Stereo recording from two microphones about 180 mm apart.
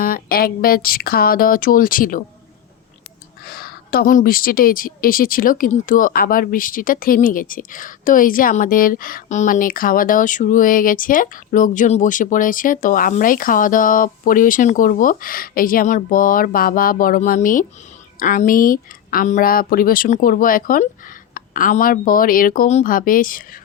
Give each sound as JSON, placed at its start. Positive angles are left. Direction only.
{"t": 0.0, "sound": "speech", "side_deg": 55}
{"t": 3.4, "sound": "a woman's voice", "side_deg": 55}